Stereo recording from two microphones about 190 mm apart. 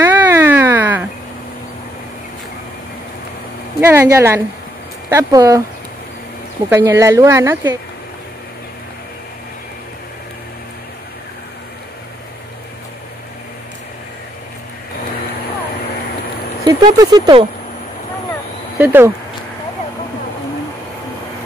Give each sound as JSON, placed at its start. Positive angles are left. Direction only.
{"t": 0.0, "sound": "a sound", "side_deg": -10}
{"t": 3.8, "sound": "speech", "side_deg": -15}
{"t": 6.7, "sound": "speech", "side_deg": -10}
{"t": 16.6, "sound": "speech", "side_deg": -20}
{"t": 18.8, "sound": "speech", "side_deg": -10}